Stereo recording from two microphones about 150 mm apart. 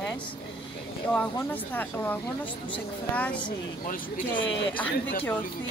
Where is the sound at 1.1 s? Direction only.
10° left (ahead or behind).